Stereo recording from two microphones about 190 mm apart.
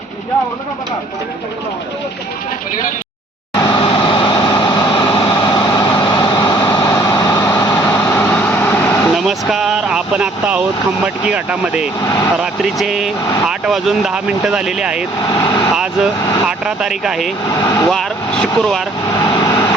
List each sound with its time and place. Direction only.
3.5 s vehicle: 20° left (ahead or behind)
9.2 s vehicle: centre (ahead or behind)
11.0 s speech: 5° right (ahead or behind)
12.0 s speech: 15° left (ahead or behind)
12.4 s speech: centre (ahead or behind)
15.3 s speech: 20° left (ahead or behind)
16.5 s speech: 5° right (ahead or behind)
17.6 s speech: 20° left (ahead or behind)
17.8 s speech: 5° left (ahead or behind)
19.2 s vehicle: 20° left (ahead or behind)